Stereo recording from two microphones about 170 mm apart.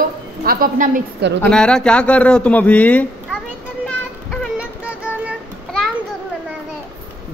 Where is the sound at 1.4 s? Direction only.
5° left (ahead or behind).